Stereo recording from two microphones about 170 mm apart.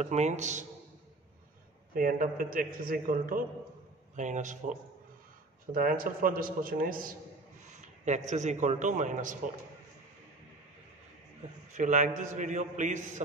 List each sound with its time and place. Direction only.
0.0 s a man's voice: 45° right (ahead or behind)
2.0 s a man's voice: 55° right (ahead or behind)
7.7 s a man's voice: 45° right (ahead or behind)
11.7 s a man's voice: 45° right (ahead or behind)